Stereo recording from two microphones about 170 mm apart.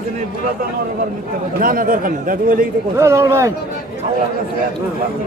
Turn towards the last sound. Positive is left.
turn(degrees=-15)  # may be behind; listen again after turning